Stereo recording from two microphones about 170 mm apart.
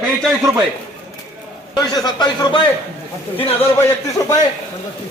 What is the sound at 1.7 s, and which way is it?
Speech, 20° left (ahead or behind).